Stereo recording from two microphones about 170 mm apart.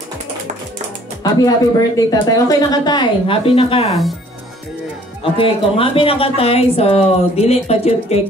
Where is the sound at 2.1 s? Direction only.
20° left (ahead or behind).